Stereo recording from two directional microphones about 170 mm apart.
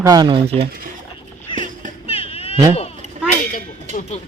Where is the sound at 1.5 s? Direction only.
50° right (ahead or behind).